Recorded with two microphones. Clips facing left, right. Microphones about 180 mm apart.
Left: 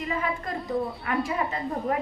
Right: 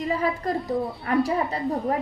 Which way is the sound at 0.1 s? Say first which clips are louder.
Right 5 dB; 35° right (ahead or behind).